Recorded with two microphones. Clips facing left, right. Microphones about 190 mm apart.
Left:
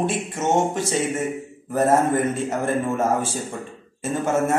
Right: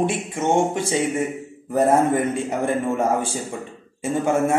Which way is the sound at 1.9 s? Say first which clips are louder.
Even; 60° right (ahead or behind).